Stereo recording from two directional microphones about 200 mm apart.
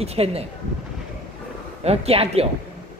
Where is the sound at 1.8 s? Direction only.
30° right (ahead or behind).